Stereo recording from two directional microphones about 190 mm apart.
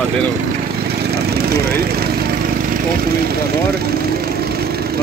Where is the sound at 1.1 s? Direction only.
55° right (ahead or behind).